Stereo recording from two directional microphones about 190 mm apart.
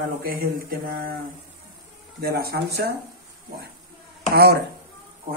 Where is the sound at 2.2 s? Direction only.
55° right (ahead or behind).